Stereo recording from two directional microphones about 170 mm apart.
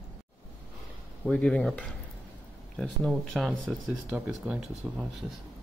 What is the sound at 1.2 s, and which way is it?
Speech, 5° left (ahead or behind).